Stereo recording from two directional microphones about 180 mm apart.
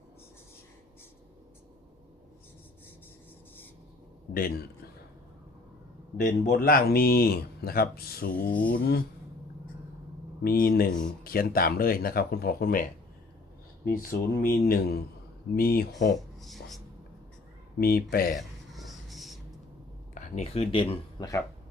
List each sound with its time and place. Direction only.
4.4 s speech: 55° left (ahead or behind)
6.1 s speech: 50° left (ahead or behind)
10.4 s speech: 55° left (ahead or behind)
13.8 s speech: 55° left (ahead or behind)
16.1 s speech: centre (ahead or behind)
17.7 s speech: 55° left (ahead or behind)
18.3 s a sound: centre (ahead or behind)
20.1 s speech: 40° left (ahead or behind)